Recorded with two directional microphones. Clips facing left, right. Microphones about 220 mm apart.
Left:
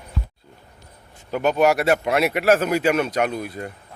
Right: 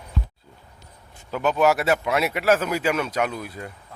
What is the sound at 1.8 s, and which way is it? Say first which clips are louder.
Speech: left 3 dB; 50° left (ahead or behind).